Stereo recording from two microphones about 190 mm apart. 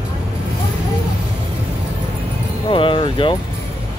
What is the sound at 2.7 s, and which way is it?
Music, 25° left (ahead or behind).